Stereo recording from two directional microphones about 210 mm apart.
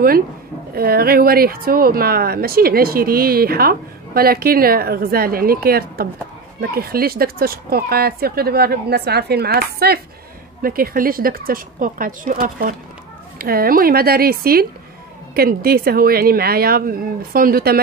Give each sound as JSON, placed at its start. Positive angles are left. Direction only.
{"t": 0.7, "sound": "speech", "side_deg": -45}